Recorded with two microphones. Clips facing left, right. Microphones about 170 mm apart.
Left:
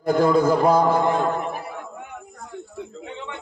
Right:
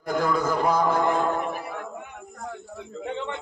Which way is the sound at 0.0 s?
30° left (ahead or behind).